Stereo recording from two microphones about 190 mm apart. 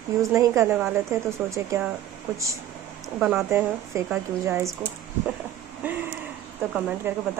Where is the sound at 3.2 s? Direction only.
5° right (ahead or behind).